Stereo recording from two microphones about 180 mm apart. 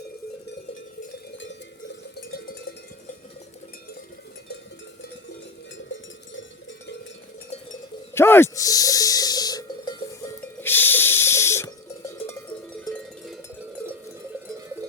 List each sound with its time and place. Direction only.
2.1 s cowbell: 65° left (ahead or behind)
5.7 s cowbell: 90° left
8.1 s a sound: 15° left (ahead or behind)
12.7 s cowbell: 5° left (ahead or behind)